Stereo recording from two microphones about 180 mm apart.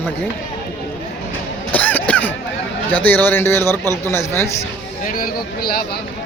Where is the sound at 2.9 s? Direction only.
10° left (ahead or behind).